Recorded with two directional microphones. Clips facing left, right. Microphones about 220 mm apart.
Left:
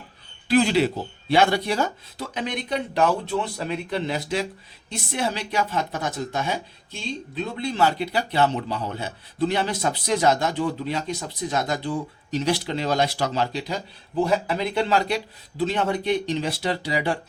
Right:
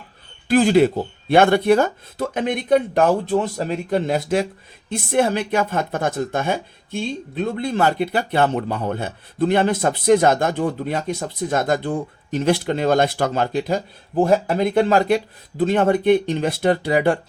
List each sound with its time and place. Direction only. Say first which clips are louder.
0.4 s speech: right 5 dB; 50° right (ahead or behind)